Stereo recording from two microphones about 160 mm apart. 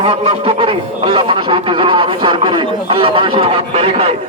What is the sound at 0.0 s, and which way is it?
Speech, 35° right (ahead or behind).